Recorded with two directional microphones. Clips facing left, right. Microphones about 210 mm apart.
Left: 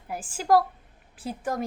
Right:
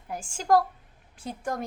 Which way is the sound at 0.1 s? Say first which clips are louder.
Left 1 dB; 5° left (ahead or behind).